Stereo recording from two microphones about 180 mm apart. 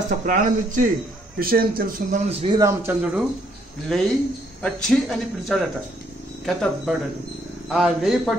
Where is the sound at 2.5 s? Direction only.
15° right (ahead or behind).